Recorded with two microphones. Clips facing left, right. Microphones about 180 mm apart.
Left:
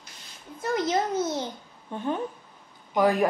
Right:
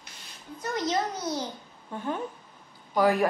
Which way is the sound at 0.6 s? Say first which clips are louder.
Left 3 dB; 25° left (ahead or behind).